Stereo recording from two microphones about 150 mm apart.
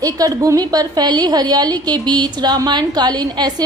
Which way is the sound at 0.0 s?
25° right (ahead or behind).